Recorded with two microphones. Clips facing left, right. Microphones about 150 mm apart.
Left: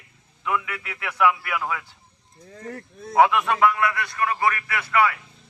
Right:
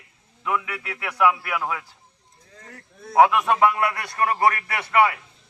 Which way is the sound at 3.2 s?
Centre (ahead or behind).